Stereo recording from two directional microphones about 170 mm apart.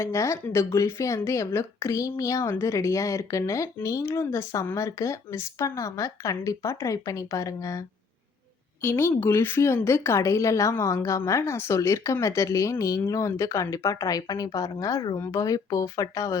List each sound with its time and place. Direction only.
0.0 s speech: 15° left (ahead or behind)